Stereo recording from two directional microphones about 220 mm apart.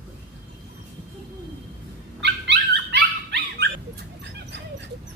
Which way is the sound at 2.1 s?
50° right (ahead or behind).